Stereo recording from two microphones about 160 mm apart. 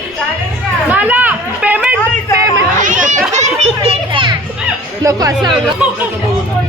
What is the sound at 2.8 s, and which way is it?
Children playing, 55° right (ahead or behind).